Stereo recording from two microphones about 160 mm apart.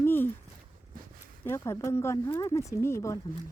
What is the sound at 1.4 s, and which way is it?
Speech, 15° left (ahead or behind).